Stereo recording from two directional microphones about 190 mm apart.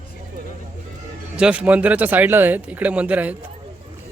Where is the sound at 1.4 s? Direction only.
5° right (ahead or behind).